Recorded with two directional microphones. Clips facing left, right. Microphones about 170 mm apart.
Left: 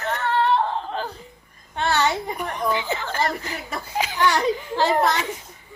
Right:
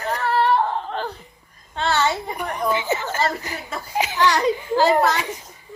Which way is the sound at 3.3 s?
15° right (ahead or behind).